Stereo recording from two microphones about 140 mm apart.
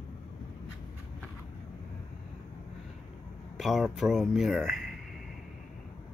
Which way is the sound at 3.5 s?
Centre (ahead or behind).